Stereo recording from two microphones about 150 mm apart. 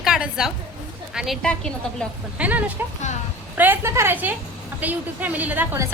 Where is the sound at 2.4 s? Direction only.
10° right (ahead or behind).